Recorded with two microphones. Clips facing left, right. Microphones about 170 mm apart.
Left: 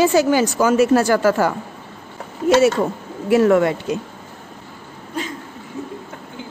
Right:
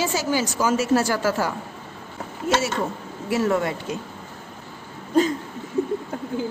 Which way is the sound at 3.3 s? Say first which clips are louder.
Left 8 dB; 65° left (ahead or behind).